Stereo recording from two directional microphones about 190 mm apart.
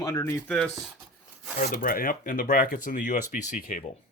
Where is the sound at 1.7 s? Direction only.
50° left (ahead or behind).